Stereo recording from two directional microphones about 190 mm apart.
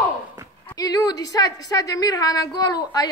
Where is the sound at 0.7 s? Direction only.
20° left (ahead or behind).